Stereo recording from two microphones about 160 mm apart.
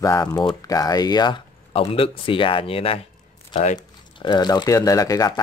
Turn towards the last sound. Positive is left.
turn(degrees=20)  # may be behind; listen again after turning